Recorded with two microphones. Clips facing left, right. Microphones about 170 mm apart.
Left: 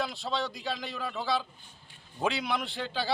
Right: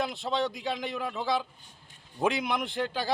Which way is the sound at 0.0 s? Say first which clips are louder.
Right 3 dB; 20° right (ahead or behind).